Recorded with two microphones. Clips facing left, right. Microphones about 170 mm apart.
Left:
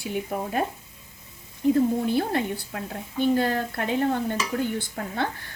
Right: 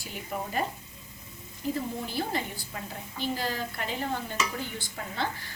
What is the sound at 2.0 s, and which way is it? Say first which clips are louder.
A woman's voice: left 8 dB; 60° left (ahead or behind).